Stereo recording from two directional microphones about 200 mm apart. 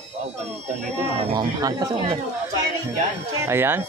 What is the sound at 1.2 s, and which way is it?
Speech, 20° right (ahead or behind).